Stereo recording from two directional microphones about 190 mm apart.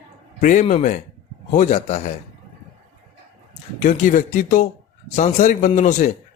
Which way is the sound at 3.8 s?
40° left (ahead or behind).